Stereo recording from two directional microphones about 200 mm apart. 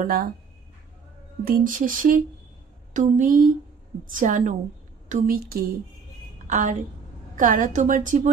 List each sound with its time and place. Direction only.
0.0 s speech: 45° right (ahead or behind)
1.4 s a woman's voice: 45° right (ahead or behind)